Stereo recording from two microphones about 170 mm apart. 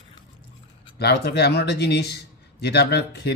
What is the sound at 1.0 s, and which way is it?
Speech, 75° left (ahead or behind).